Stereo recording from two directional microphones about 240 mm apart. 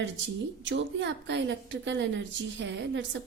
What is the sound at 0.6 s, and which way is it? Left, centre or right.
A woman's voice, right.